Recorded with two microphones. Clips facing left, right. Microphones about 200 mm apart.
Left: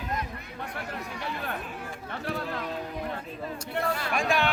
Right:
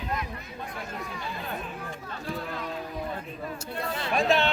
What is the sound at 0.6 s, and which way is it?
Chatter, 65° left (ahead or behind).